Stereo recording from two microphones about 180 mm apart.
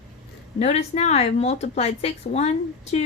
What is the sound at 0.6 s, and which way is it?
A woman's voice, 35° left (ahead or behind).